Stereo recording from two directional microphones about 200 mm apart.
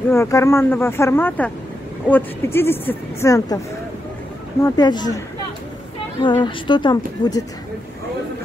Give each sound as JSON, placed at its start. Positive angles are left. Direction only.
{"t": 0.1, "sound": "speech", "side_deg": 15}
{"t": 4.6, "sound": "speech", "side_deg": 20}
{"t": 6.2, "sound": "speech", "side_deg": 25}